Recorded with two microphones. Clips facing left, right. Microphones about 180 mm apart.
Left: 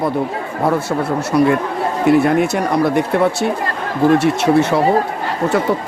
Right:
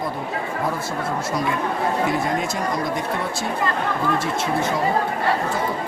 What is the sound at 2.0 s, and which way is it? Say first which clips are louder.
Speech: left 10 dB; 65° left (ahead or behind).